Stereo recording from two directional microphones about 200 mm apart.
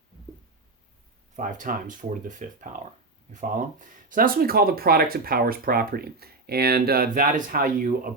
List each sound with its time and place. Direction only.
1.4 s speech: 40° right (ahead or behind)